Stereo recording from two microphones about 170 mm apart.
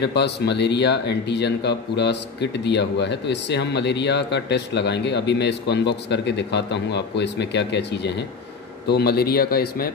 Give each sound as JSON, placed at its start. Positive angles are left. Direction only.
{"t": 0.0, "sound": "speech", "side_deg": 80}
{"t": 8.8, "sound": "speech", "side_deg": 70}